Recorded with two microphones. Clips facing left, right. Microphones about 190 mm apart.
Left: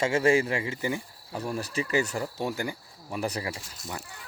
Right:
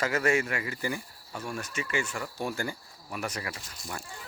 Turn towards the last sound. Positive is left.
turn(degrees=30)  # may be behind; listen again after turning